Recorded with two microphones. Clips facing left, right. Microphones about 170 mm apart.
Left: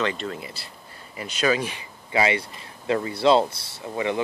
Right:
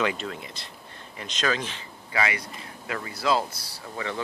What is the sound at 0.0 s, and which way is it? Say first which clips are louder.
Speech: left 1 dB; 5° right (ahead or behind).